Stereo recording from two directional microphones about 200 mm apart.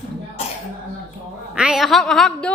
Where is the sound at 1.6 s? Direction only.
5° right (ahead or behind).